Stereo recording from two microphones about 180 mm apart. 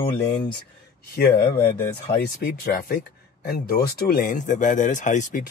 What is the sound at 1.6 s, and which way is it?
Speech, 30° left (ahead or behind).